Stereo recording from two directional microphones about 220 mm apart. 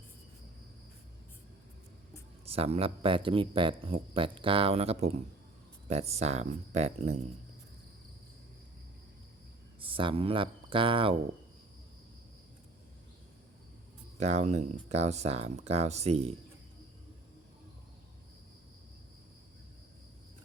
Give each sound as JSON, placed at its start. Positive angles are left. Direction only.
{"t": 2.5, "sound": "speech", "side_deg": -25}
{"t": 9.8, "sound": "speech", "side_deg": -25}
{"t": 14.2, "sound": "speech", "side_deg": -30}